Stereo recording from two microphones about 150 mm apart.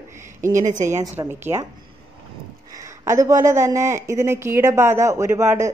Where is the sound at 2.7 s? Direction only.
20° right (ahead or behind).